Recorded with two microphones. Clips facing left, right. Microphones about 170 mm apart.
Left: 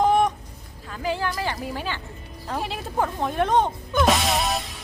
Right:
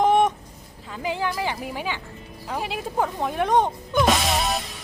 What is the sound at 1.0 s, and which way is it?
Speech, 15° right (ahead or behind).